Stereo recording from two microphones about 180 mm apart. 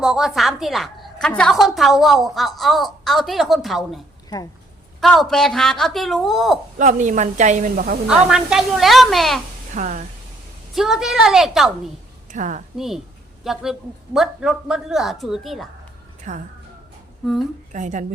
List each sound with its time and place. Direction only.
0.0 s a woman's voice: centre (ahead or behind)
6.7 s a woman's voice: 45° right (ahead or behind)
8.0 s a woman's voice: 5° right (ahead or behind)
9.7 s a woman's voice: 45° right (ahead or behind)
10.8 s a woman's voice: centre (ahead or behind)
12.3 s a woman's voice: 45° right (ahead or behind)
12.7 s a woman's voice: centre (ahead or behind)
16.3 s a woman's voice: 45° right (ahead or behind)
17.7 s a woman's voice: 45° right (ahead or behind)